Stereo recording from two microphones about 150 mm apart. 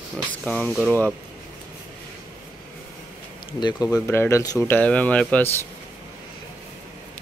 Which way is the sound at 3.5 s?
30° left (ahead or behind).